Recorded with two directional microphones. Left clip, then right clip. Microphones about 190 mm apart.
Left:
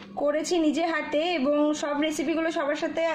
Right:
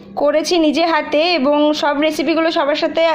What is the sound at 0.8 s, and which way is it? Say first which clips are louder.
A woman's voice: right 11 dB; 10° right (ahead or behind).